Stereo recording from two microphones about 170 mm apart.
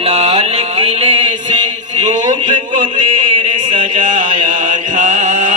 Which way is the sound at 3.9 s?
50° right (ahead or behind).